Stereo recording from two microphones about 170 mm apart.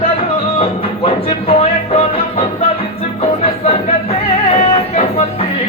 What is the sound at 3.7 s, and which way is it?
Music, 35° left (ahead or behind).